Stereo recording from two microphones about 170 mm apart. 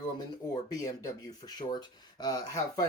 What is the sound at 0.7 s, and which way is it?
Speech, 20° left (ahead or behind).